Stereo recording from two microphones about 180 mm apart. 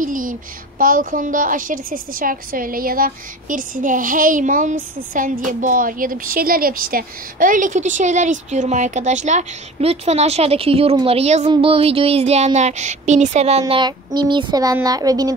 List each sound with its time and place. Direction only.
0.0 s a woman's voice: 50° right (ahead or behind); by 15.3 s 20° right (ahead or behind)